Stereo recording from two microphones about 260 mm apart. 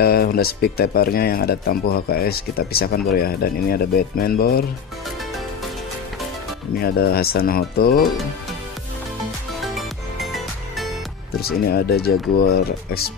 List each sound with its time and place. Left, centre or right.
0.0 s speech: left
6.8 s speech: left
9.8 s music: centre
11.3 s speech: left